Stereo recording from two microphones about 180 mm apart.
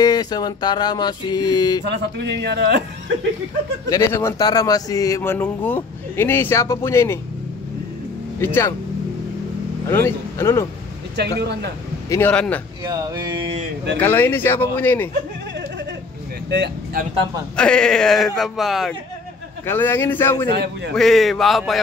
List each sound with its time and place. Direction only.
0.0 s a sound: 20° left (ahead or behind)
1.9 s speech: 70° right (ahead or behind)
3.9 s speech: 15° left (ahead or behind)
9.8 s speech: 15° left (ahead or behind)
11.1 s a man's voice: 65° right (ahead or behind)
12.1 s speech: 10° left (ahead or behind)
12.8 s a sound: 20° right (ahead or behind)
13.9 s speech: 10° left (ahead or behind)
16.4 s speech: 70° right (ahead or behind)
17.6 s speech: 5° left (ahead or behind)
19.6 s speech: 10° left (ahead or behind)
20.4 s speech: 65° right (ahead or behind)
20.9 s speech: centre (ahead or behind)